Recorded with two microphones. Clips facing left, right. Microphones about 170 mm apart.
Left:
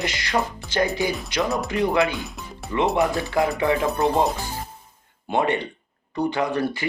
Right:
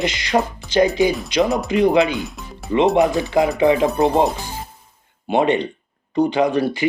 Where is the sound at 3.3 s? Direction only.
20° right (ahead or behind).